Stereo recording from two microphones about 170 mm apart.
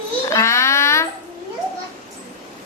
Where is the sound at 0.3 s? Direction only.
15° left (ahead or behind).